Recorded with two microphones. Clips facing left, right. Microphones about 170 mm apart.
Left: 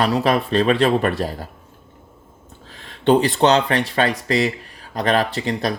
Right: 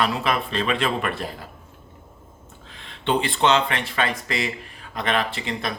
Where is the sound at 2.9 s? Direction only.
40° left (ahead or behind).